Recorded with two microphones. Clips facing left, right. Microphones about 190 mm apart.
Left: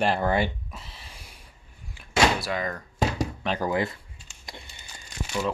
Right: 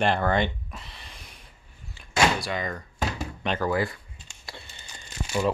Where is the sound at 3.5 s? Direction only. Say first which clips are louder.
Right 1 dB; 20° left (ahead or behind).